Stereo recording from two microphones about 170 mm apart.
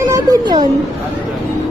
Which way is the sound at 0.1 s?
20° right (ahead or behind).